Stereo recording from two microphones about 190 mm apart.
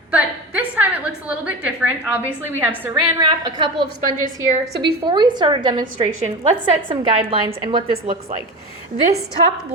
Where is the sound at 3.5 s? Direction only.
25° right (ahead or behind).